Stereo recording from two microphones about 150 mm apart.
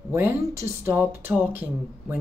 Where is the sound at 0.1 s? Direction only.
15° right (ahead or behind).